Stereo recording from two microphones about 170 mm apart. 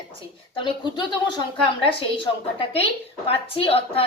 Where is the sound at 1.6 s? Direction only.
30° left (ahead or behind).